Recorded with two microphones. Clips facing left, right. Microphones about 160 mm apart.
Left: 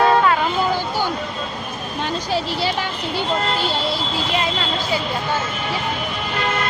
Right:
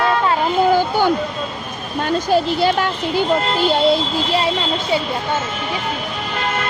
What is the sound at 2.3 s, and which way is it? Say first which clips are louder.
Speech: right 7 dB; 50° right (ahead or behind).